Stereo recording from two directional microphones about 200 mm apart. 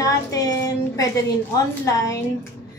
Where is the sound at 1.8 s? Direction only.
15° left (ahead or behind).